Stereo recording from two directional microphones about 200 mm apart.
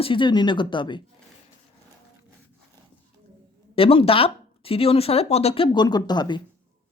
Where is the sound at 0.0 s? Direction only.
25° left (ahead or behind).